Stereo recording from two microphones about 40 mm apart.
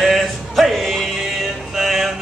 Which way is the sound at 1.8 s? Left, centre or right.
Centre.